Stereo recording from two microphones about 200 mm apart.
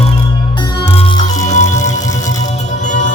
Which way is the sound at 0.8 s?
30° left (ahead or behind).